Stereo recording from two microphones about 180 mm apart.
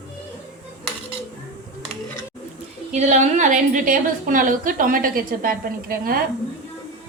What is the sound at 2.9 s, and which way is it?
A woman's voice, 40° right (ahead or behind).